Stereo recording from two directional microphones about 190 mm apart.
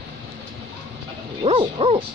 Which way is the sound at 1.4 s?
30° right (ahead or behind).